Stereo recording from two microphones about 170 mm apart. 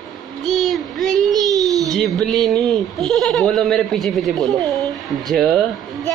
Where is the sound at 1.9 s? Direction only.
Centre (ahead or behind).